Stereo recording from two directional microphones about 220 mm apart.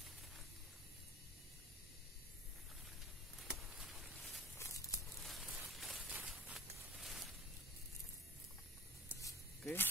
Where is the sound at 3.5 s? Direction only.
Centre (ahead or behind).